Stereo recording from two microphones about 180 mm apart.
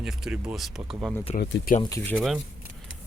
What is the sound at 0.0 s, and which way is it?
Speech, 5° right (ahead or behind).